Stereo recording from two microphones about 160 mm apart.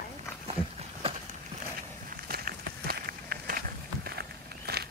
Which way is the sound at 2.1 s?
70° right (ahead or behind).